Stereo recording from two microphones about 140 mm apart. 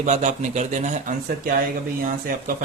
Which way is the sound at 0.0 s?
55° right (ahead or behind).